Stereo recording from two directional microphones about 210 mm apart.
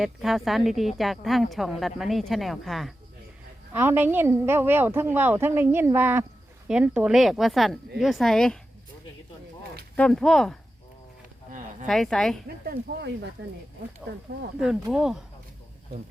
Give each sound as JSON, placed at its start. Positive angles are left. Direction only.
{"t": 0.0, "sound": "a woman's voice", "side_deg": 0}
{"t": 9.9, "sound": "a woman's voice", "side_deg": 5}
{"t": 11.9, "sound": "a woman's voice", "side_deg": 0}
{"t": 12.6, "sound": "speech", "side_deg": -45}
{"t": 14.6, "sound": "a woman's voice", "side_deg": 0}